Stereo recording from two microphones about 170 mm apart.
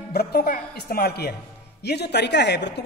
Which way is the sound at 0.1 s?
70° left (ahead or behind).